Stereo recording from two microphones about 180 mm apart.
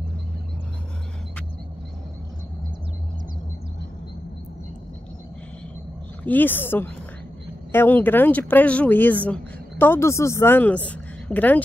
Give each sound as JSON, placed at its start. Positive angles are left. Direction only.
{"t": 6.2, "sound": "speech", "side_deg": 10}